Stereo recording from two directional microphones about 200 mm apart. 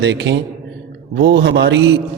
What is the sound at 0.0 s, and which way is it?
A man's voice, 60° right (ahead or behind).